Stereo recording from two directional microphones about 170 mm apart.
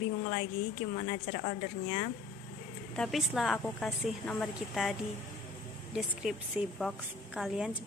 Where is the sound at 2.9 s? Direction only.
Centre (ahead or behind).